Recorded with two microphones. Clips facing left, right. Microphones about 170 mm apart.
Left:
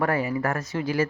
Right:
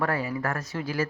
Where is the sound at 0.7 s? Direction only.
Centre (ahead or behind).